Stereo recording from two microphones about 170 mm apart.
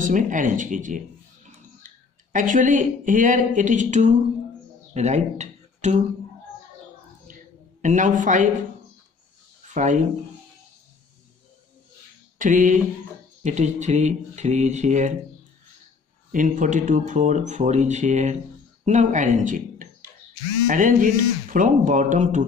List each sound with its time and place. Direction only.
0.0 s speech: 50° right (ahead or behind)
1.8 s clicking: 50° right (ahead or behind)
2.3 s speech: 50° right (ahead or behind)
7.8 s speech: 50° right (ahead or behind)
9.8 s speech: 45° right (ahead or behind)
12.4 s speech: 50° right (ahead or behind)
16.3 s speech: 50° right (ahead or behind)